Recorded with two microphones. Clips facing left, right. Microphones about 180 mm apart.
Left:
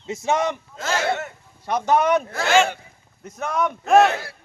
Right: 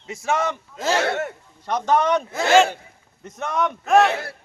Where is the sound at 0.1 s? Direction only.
20° left (ahead or behind).